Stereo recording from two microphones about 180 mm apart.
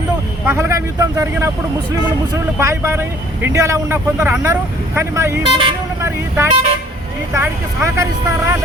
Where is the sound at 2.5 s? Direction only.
15° right (ahead or behind).